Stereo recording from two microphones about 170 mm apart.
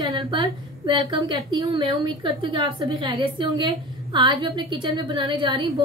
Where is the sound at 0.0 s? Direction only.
20° right (ahead or behind).